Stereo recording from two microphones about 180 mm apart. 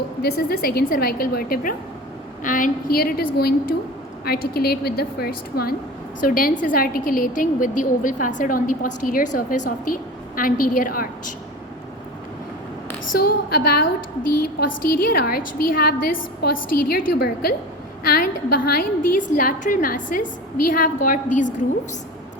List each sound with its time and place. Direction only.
0.2 s a woman's voice: 60° left (ahead or behind)
13.1 s a woman's voice: 60° left (ahead or behind)